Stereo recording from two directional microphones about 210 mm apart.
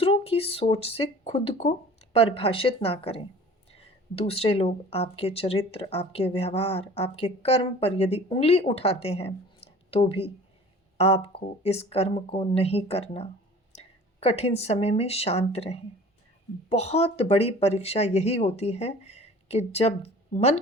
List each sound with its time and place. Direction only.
0.0 s speech: 25° left (ahead or behind)